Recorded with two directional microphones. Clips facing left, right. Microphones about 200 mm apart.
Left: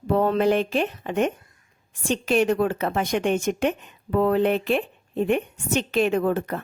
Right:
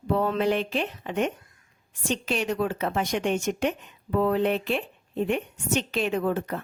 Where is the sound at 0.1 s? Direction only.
45° left (ahead or behind).